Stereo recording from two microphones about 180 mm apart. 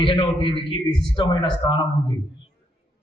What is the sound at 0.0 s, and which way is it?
A man's voice, 30° left (ahead or behind).